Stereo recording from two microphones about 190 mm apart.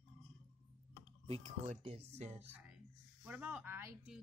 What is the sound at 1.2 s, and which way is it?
Speech, 35° right (ahead or behind).